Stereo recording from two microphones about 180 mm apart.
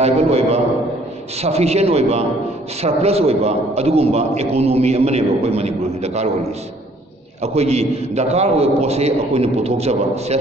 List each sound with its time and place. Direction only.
0.0 s a man's voice: 35° right (ahead or behind)
7.4 s a man's voice: 35° right (ahead or behind)